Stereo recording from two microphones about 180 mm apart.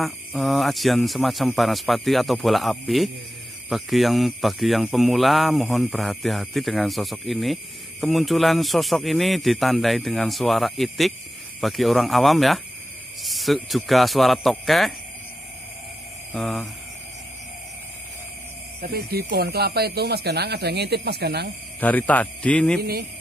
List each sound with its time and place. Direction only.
0.0 s speech: centre (ahead or behind)
16.3 s speech: centre (ahead or behind)
18.8 s speech: 60° right (ahead or behind)
21.7 s a man's voice: 10° left (ahead or behind)